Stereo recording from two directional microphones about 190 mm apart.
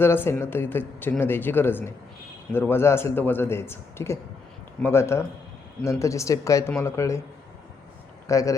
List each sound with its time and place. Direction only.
0.0 s speech: 10° left (ahead or behind)
8.3 s speech: 15° left (ahead or behind)